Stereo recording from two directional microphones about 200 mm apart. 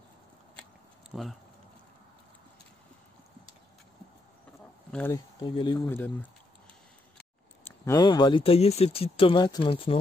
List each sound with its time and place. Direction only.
1.1 s speech: centre (ahead or behind)
4.9 s speech: 10° left (ahead or behind)
5.4 s speech: 20° left (ahead or behind)
5.9 s speech: 10° left (ahead or behind)
7.6 s speech: 15° left (ahead or behind)